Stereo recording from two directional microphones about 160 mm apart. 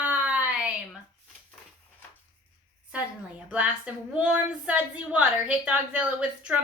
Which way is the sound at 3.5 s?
10° right (ahead or behind).